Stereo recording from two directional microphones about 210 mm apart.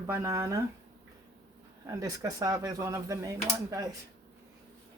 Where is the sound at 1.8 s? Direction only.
15° right (ahead or behind).